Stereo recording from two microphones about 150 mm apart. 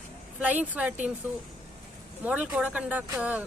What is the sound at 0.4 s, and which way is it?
Speech, 10° right (ahead or behind).